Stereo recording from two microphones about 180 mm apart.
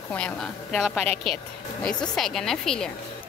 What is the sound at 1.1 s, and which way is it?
Speech, 30° right (ahead or behind).